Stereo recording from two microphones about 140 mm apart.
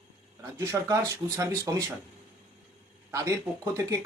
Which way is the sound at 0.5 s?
20° right (ahead or behind).